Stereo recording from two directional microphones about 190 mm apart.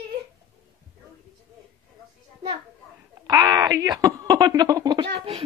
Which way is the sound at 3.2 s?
20° right (ahead or behind).